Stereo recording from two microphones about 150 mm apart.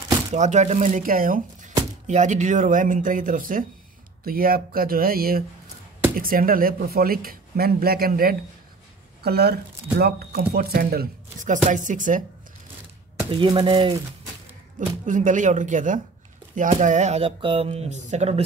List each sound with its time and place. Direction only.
0.3 s speech: 50° right (ahead or behind)
2.0 s speech: 50° right (ahead or behind); by 8.4 s 80° right
9.2 s speech: 90° right
11.4 s speech: 60° right (ahead or behind)
13.3 s speech: 30° right (ahead or behind)
15.0 s speech: 60° right (ahead or behind)